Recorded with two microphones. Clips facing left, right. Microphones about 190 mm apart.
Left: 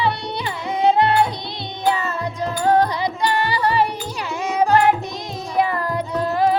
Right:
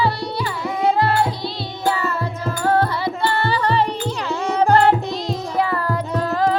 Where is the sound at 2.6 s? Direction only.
15° left (ahead or behind).